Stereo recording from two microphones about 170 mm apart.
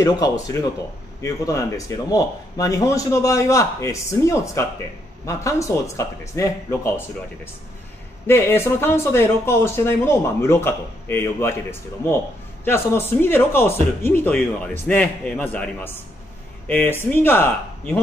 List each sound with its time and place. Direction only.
0.0 s speech: 20° left (ahead or behind)
8.3 s speech: 15° left (ahead or behind)
12.6 s speech: 15° left (ahead or behind)